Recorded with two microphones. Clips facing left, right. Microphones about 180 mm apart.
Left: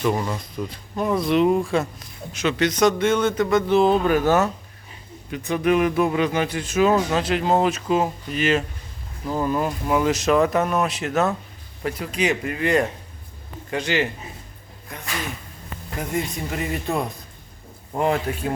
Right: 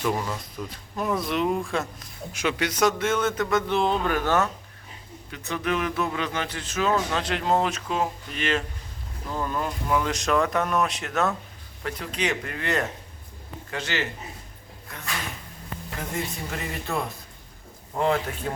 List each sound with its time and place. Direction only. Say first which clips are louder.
0.0 s a man's voice: left 4 dB; 10° left (ahead or behind)
2.3 s a man's voice: left 5 dB; 10° right (ahead or behind); by 14.1 s 15° left (ahead or behind)
16.0 s a man's voice: left 6 dB; 15° left (ahead or behind)